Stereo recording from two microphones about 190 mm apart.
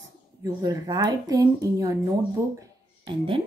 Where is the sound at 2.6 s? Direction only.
30° right (ahead or behind).